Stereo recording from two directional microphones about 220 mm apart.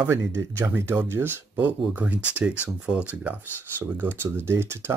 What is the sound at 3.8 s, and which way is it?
Speech, 10° right (ahead or behind).